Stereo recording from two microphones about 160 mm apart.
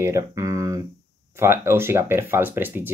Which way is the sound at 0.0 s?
20° right (ahead or behind).